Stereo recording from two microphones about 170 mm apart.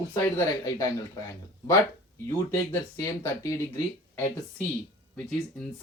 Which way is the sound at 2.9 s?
20° left (ahead or behind).